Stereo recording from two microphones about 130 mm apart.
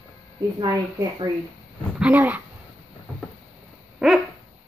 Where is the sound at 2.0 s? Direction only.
15° right (ahead or behind).